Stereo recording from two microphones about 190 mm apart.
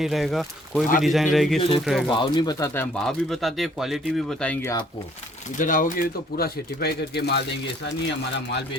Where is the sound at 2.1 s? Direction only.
25° left (ahead or behind).